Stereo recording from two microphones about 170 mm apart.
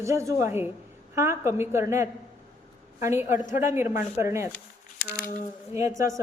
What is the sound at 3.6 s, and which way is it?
Speech, 15° right (ahead or behind).